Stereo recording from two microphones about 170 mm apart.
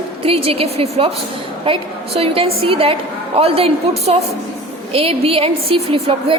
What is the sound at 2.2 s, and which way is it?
A woman's voice, 35° right (ahead or behind).